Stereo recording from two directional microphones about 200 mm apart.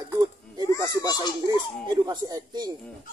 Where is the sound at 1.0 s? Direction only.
20° left (ahead or behind).